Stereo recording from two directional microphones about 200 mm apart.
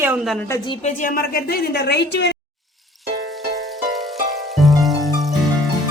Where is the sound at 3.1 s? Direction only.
45° right (ahead or behind).